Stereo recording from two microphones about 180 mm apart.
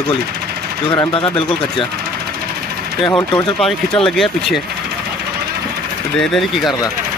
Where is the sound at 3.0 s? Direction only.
25° left (ahead or behind).